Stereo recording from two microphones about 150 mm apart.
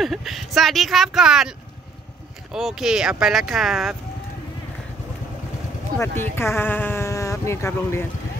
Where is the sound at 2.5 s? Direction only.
5° right (ahead or behind).